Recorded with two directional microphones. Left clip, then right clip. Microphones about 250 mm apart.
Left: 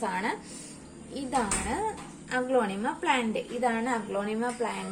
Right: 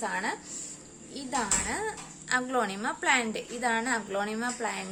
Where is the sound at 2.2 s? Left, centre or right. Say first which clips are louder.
Left 1 dB; right.